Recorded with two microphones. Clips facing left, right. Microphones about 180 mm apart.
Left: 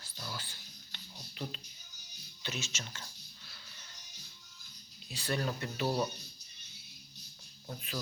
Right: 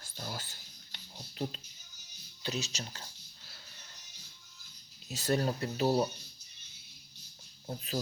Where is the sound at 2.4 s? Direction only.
35° right (ahead or behind).